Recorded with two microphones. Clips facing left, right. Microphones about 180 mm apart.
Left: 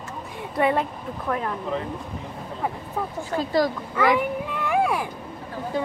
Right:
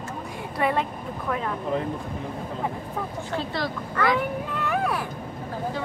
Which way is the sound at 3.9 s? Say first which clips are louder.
Left 1 dB; 10° left (ahead or behind).